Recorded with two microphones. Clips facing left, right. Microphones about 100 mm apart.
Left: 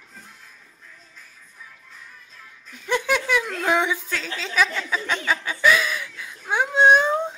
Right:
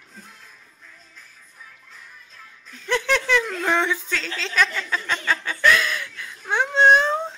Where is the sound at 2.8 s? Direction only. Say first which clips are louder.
Even; 10° left (ahead or behind).